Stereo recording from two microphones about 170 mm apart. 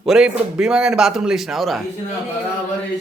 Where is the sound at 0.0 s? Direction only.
5° right (ahead or behind).